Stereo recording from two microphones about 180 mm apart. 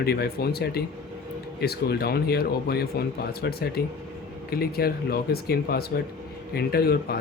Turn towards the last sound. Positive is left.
turn(degrees=60)  # may be behind; listen again after turning